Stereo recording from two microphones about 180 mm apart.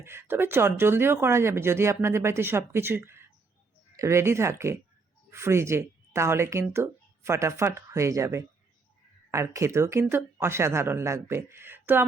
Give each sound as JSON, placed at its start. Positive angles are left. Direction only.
{"t": 0.0, "sound": "speech", "side_deg": -15}